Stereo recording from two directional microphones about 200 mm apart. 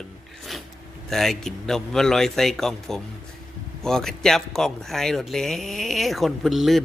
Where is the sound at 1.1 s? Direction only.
Centre (ahead or behind).